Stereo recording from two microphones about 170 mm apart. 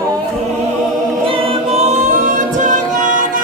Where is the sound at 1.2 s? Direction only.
35° right (ahead or behind).